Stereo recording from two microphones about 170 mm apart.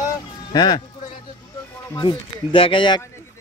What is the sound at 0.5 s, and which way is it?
Speech, 25° left (ahead or behind).